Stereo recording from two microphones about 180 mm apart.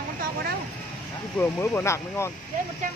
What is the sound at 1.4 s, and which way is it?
Speech, 15° left (ahead or behind).